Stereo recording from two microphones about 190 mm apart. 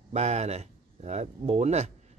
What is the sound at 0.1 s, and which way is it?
Speech, 35° right (ahead or behind).